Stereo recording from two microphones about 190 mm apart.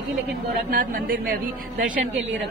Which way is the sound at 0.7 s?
45° right (ahead or behind).